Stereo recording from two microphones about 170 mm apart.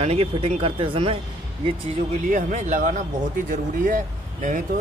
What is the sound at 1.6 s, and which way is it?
Speech, 45° right (ahead or behind).